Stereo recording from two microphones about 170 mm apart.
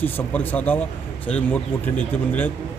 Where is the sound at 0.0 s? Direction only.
10° left (ahead or behind).